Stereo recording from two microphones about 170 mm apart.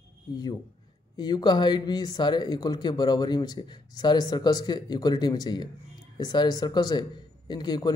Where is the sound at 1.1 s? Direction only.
25° left (ahead or behind).